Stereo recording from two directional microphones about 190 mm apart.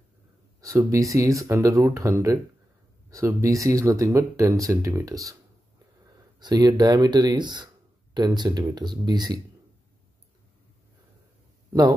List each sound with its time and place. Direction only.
0.6 s speech: 15° right (ahead or behind)
6.4 s speech: 20° right (ahead or behind)